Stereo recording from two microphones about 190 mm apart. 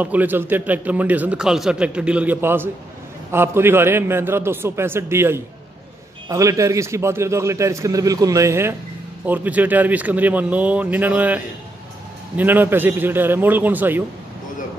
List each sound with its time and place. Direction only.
0.0 s a man's voice: 10° right (ahead or behind)